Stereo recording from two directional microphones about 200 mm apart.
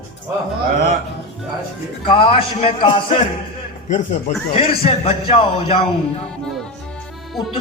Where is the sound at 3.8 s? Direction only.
40° left (ahead or behind).